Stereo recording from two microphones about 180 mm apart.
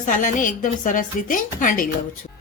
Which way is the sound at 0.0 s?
45° left (ahead or behind).